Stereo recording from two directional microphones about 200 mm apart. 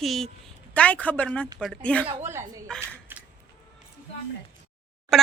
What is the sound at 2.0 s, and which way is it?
Speech, 15° right (ahead or behind).